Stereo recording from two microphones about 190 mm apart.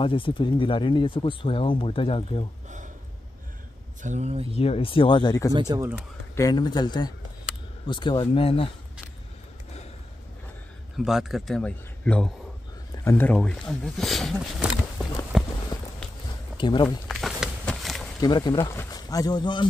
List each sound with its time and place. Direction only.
0.0 s speech: 25° left (ahead or behind)
4.0 s speech: 35° right (ahead or behind)
4.6 s speech: 30° left (ahead or behind)
5.5 s speech: 20° right (ahead or behind)
6.3 s speech: 20° left (ahead or behind)
11.1 s a man's voice: centre (ahead or behind)
16.5 s speech: 25° left (ahead or behind)
17.1 s a sound: centre (ahead or behind)
18.2 s speech: 25° left (ahead or behind)